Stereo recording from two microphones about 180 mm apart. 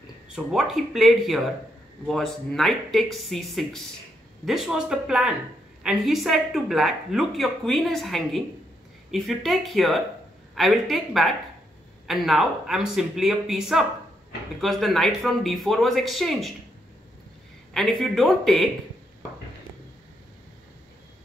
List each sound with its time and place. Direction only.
0.3 s speech: centre (ahead or behind)
17.7 s speech: centre (ahead or behind)